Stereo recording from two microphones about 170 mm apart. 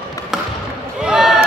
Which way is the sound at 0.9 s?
5° right (ahead or behind).